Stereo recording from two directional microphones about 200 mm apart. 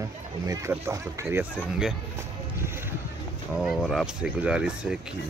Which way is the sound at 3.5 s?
Centre (ahead or behind).